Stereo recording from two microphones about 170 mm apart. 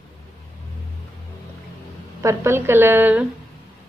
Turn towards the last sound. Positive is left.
turn(degrees=-10)  # may be behind; listen again after turning